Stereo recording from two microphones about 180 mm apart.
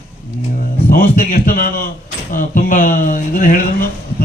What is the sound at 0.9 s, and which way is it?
Speech, 50° left (ahead or behind).